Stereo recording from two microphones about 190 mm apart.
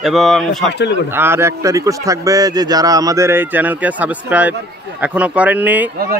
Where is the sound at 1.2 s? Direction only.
15° right (ahead or behind).